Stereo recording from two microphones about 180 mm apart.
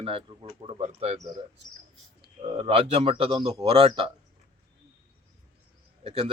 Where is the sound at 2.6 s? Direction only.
35° right (ahead or behind).